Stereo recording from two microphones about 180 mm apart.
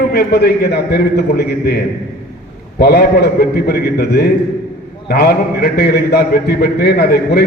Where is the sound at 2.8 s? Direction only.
65° left (ahead or behind).